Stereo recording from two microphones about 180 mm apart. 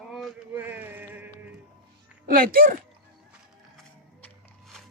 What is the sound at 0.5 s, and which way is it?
Music, 10° right (ahead or behind).